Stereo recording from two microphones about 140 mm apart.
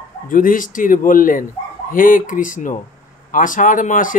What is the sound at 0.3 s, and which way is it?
Speech, 75° left (ahead or behind).